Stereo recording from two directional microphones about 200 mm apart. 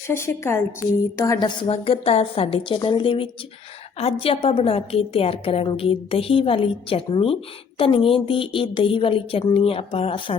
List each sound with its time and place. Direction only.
0.1 s a woman's voice: 15° left (ahead or behind)